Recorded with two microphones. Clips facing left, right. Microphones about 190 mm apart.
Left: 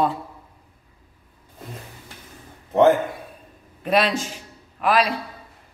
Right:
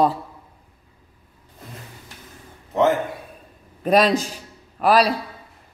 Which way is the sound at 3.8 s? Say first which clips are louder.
Right 4 dB; 40° right (ahead or behind).